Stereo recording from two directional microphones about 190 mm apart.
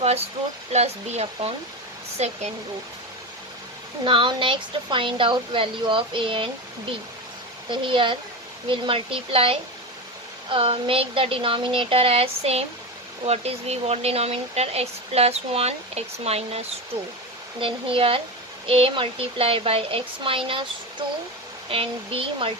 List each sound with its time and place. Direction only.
0.7 s speech: 35° right (ahead or behind)
4.0 s a woman's voice: 25° right (ahead or behind)
7.7 s a woman's voice: 25° right (ahead or behind)
21.7 s a woman's voice: 30° right (ahead or behind)